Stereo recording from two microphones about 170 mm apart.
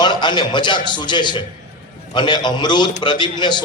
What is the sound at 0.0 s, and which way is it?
A man's voice, 25° left (ahead or behind).